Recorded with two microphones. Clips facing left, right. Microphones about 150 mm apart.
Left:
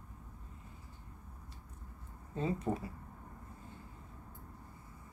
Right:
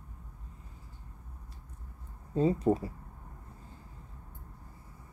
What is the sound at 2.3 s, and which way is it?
Speech, 35° right (ahead or behind).